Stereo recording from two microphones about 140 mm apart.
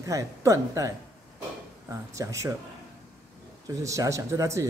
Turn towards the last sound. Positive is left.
turn(degrees=-20)  # may be behind; listen again after turning